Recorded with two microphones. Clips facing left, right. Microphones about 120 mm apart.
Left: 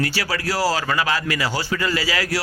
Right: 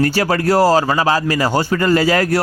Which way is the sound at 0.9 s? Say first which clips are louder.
Right 6 dB; 35° right (ahead or behind).